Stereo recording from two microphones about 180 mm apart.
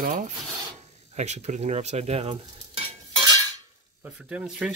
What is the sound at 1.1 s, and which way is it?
Speech, 40° right (ahead or behind).